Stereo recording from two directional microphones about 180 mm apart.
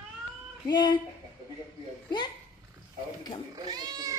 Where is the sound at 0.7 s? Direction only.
25° left (ahead or behind).